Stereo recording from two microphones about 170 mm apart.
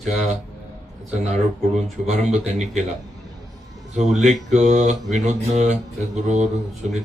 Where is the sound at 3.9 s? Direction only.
45° right (ahead or behind).